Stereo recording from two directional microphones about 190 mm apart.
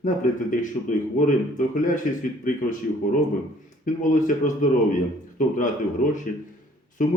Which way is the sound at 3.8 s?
45° left (ahead or behind).